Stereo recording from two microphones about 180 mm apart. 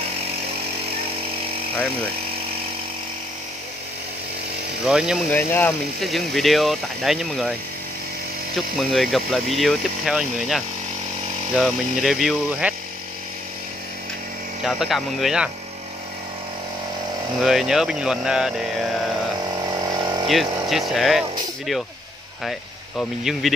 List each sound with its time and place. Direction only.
4.8 s speech: 5° right (ahead or behind)
5.3 s speech: 15° left (ahead or behind)
5.9 s speech: centre (ahead or behind)
8.5 s speech: centre (ahead or behind)
14.6 s speech: centre (ahead or behind)
17.4 s speech: centre (ahead or behind)
19.5 s a sound: 20° right (ahead or behind)
20.7 s speech: centre (ahead or behind)
22.4 s speech: centre (ahead or behind)